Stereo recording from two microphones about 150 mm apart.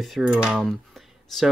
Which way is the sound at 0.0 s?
5° right (ahead or behind).